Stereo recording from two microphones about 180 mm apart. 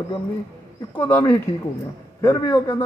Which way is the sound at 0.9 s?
10° left (ahead or behind).